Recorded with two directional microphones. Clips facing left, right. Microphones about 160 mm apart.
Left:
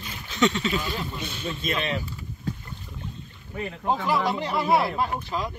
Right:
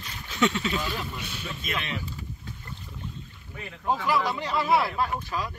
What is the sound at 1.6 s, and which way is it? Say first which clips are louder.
Speech: left 6 dB; 35° left (ahead or behind).